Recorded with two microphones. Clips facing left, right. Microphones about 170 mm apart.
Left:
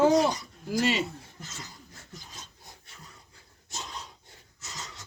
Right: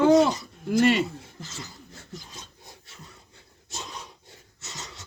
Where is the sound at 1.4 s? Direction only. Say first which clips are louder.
Right 3 dB; 25° right (ahead or behind).